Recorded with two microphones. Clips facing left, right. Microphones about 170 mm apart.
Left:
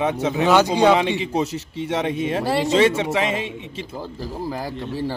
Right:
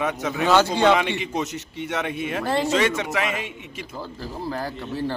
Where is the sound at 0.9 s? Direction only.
30° left (ahead or behind).